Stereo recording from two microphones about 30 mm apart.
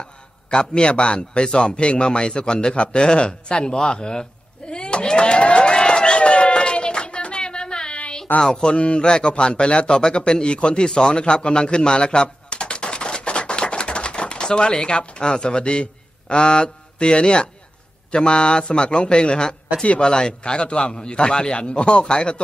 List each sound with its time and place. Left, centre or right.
0.0 s a man's voice: left
2.7 s a sound: left
8.4 s a man's voice: left
8.7 s speech: left
9.0 s a man's voice: left
10.9 s a sound: left
18.1 s a man's voice: left